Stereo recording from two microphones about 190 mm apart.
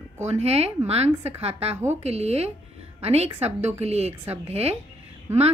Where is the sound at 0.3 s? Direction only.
35° right (ahead or behind).